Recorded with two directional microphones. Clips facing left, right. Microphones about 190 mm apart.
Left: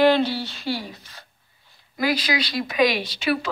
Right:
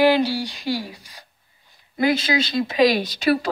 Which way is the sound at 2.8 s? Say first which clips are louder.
Right 4 dB; 40° right (ahead or behind).